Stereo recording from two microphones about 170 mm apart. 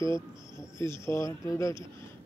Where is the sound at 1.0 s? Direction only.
15° left (ahead or behind).